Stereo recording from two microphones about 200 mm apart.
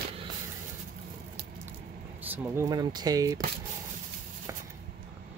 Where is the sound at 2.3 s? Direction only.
15° right (ahead or behind).